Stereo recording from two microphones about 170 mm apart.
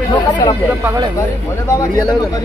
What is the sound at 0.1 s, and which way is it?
Speech, 25° left (ahead or behind).